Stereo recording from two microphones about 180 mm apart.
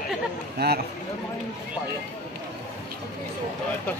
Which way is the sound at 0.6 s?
65° right (ahead or behind).